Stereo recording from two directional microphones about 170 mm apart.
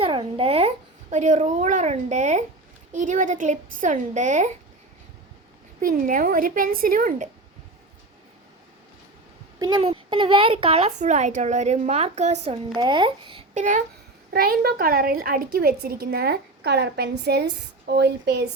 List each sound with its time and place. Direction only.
0.0 s a child's voice: 30° right (ahead or behind)
5.8 s a woman's voice: 55° right (ahead or behind)
9.6 s speech: 25° right (ahead or behind); by 12.5 s 40° right (ahead or behind)
12.7 s speech: 25° right (ahead or behind)
13.5 s a child's voice: 45° right (ahead or behind)
14.3 s a woman's voice: 65° right (ahead or behind)